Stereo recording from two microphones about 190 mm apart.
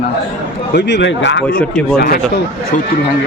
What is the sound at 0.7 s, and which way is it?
Speech, 60° left (ahead or behind).